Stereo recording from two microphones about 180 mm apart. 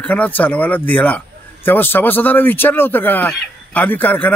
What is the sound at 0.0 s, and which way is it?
A man's voice, 10° left (ahead or behind).